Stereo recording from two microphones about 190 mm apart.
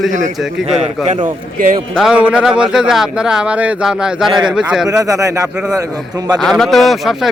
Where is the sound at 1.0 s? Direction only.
40° right (ahead or behind).